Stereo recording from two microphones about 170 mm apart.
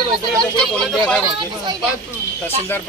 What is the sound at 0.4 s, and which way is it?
Speech, 5° left (ahead or behind).